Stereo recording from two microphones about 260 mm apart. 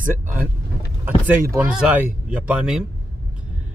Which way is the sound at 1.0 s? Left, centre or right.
Centre.